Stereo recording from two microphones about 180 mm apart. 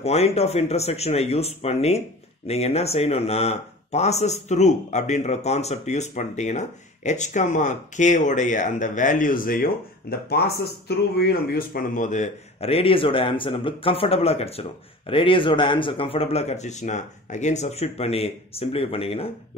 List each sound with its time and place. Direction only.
0.0 s speech: 35° left (ahead or behind)